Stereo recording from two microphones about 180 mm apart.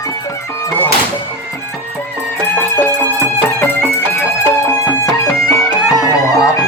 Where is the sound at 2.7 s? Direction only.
15° left (ahead or behind).